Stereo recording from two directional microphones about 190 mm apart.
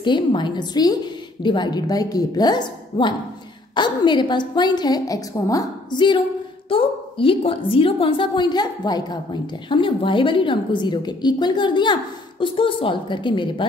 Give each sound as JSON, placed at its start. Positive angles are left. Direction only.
{"t": 0.0, "sound": "a woman's voice", "side_deg": 25}